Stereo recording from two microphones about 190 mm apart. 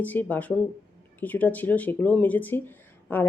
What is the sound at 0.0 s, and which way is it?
Speech, 10° left (ahead or behind).